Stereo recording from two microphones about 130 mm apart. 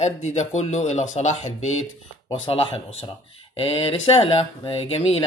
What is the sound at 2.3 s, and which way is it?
Speech, 45° left (ahead or behind).